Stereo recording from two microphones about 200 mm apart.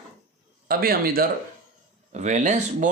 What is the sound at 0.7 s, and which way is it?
Speech, 50° right (ahead or behind).